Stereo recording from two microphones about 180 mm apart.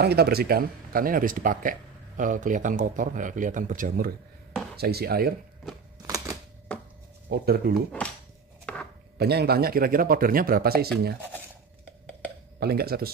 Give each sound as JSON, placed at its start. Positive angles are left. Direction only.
{"t": 0.0, "sound": "speech", "side_deg": -60}
{"t": 4.7, "sound": "speech", "side_deg": -60}
{"t": 6.0, "sound": "a sound", "side_deg": -20}
{"t": 6.7, "sound": "chopping", "side_deg": 5}
{"t": 7.2, "sound": "speech", "side_deg": -60}
{"t": 8.7, "sound": "a sound", "side_deg": 5}
{"t": 9.2, "sound": "speech", "side_deg": -60}
{"t": 12.5, "sound": "speech", "side_deg": -60}